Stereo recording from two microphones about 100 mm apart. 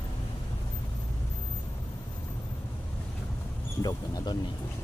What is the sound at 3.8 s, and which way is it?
Speech, 40° left (ahead or behind).